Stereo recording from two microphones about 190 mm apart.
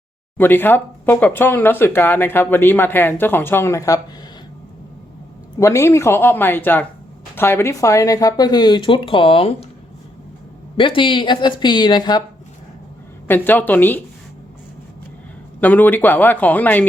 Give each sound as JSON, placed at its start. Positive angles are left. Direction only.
{"t": 0.3, "sound": "speech", "side_deg": 10}
{"t": 5.5, "sound": "speech", "side_deg": 15}
{"t": 10.8, "sound": "speech", "side_deg": 25}
{"t": 13.2, "sound": "speech", "side_deg": 10}
{"t": 15.6, "sound": "speech", "side_deg": 10}